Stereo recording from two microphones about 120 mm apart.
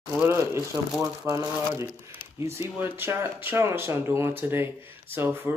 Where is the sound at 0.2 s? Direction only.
20° right (ahead or behind).